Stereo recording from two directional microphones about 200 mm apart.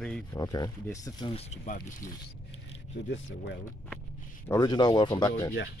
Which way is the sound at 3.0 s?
60° left (ahead or behind).